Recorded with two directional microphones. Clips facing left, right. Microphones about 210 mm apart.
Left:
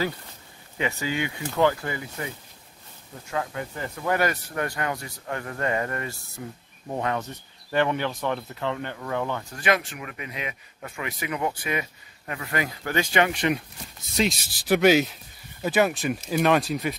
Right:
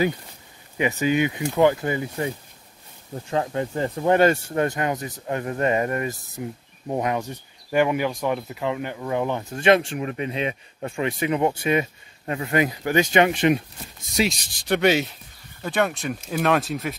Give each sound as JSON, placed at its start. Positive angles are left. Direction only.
{"t": 0.7, "sound": "speech", "side_deg": -20}
{"t": 14.2, "sound": "speech", "side_deg": -10}
{"t": 14.5, "sound": "speech", "side_deg": 5}